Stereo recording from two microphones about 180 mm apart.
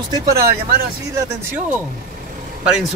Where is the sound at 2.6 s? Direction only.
5° right (ahead or behind).